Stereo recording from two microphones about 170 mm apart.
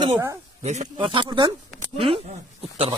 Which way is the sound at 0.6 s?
40° right (ahead or behind).